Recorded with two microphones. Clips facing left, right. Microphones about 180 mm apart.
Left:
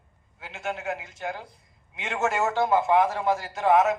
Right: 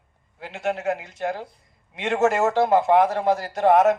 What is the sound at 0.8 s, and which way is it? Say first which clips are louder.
A woman's voice: right 6 dB; 40° right (ahead or behind).